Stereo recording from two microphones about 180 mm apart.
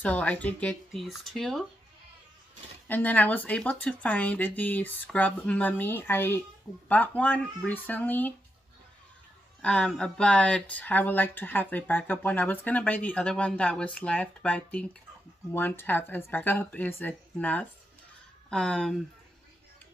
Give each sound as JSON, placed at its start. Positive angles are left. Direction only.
{"t": 0.0, "sound": "speech", "side_deg": 10}
{"t": 2.9, "sound": "speech", "side_deg": 10}
{"t": 9.6, "sound": "speech", "side_deg": 5}